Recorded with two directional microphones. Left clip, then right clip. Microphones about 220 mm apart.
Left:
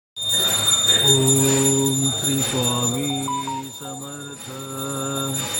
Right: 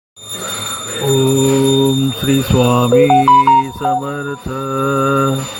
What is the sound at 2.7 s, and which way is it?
Mantra, 25° right (ahead or behind).